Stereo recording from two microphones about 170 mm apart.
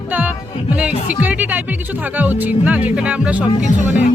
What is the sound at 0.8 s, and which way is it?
Speech, 10° right (ahead or behind).